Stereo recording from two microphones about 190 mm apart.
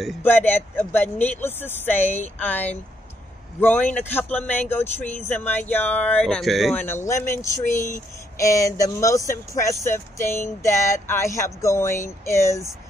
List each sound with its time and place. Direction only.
0.2 s speech: 10° left (ahead or behind)